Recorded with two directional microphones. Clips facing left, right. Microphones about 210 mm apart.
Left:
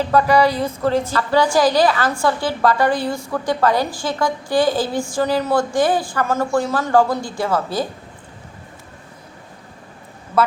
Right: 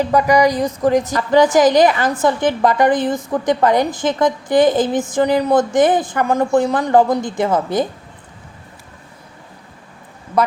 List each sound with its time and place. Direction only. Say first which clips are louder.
0.0 s a woman's voice: right 2 dB; 15° right (ahead or behind)